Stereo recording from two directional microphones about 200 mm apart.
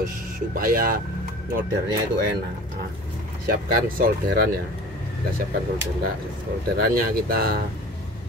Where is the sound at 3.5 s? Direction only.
45° right (ahead or behind).